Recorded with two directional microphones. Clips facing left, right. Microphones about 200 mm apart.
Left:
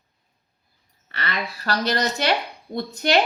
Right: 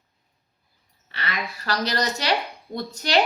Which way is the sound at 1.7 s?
55° left (ahead or behind).